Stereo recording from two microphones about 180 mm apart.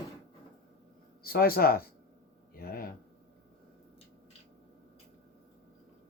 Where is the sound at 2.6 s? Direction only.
55° left (ahead or behind).